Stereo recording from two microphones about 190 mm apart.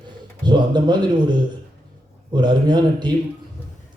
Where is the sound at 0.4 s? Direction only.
25° right (ahead or behind).